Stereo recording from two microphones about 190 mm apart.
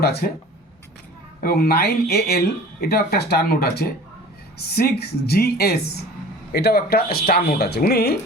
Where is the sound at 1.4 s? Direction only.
50° left (ahead or behind).